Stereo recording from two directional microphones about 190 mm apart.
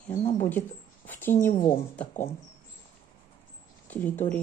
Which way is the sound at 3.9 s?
10° left (ahead or behind).